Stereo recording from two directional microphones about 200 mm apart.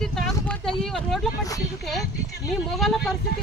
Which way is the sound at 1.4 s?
15° left (ahead or behind).